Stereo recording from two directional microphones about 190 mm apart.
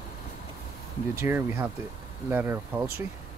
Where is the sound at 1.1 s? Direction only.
10° right (ahead or behind).